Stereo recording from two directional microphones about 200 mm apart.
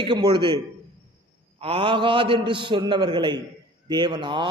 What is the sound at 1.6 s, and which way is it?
A man's voice, 25° right (ahead or behind).